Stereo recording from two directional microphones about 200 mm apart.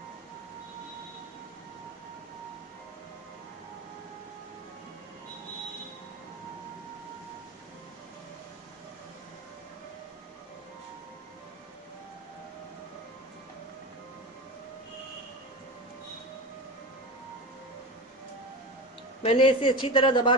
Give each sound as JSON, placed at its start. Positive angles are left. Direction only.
{"t": 19.2, "sound": "a man's voice", "side_deg": 25}